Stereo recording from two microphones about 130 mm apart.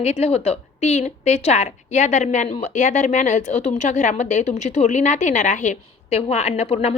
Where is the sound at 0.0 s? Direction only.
55° left (ahead or behind).